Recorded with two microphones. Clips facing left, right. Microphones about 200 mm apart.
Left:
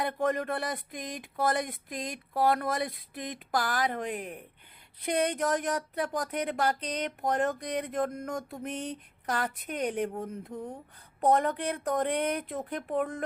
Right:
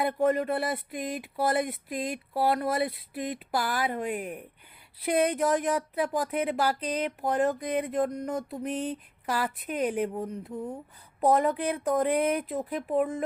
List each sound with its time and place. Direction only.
0.0 s a woman's voice: 5° right (ahead or behind)